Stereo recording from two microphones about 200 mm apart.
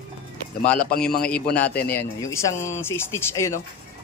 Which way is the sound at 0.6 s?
5° left (ahead or behind).